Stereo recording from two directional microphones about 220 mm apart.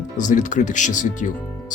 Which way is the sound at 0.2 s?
35° left (ahead or behind).